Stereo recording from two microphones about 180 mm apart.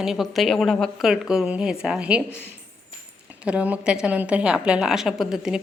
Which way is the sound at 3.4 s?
5° right (ahead or behind).